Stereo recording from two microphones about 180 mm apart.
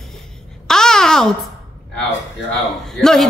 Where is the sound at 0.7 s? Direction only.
5° left (ahead or behind).